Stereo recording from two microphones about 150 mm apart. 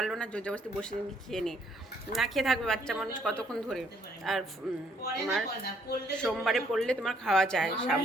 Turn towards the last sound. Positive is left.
turn(degrees=5)  # may be behind; listen again after turning